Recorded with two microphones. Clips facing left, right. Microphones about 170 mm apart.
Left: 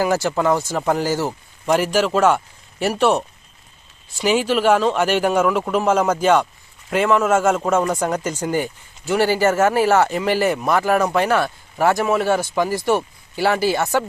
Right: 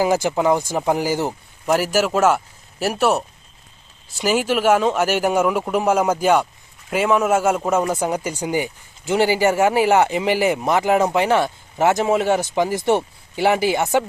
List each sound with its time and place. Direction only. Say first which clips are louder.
0.0 s a man's voice: right 1 dB; 15° right (ahead or behind)